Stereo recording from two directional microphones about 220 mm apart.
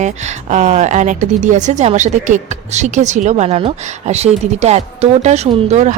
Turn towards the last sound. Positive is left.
turn(degrees=-30)  # may be behind; listen again after turning